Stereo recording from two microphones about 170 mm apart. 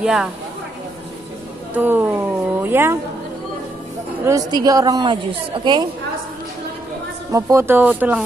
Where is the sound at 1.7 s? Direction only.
10° right (ahead or behind).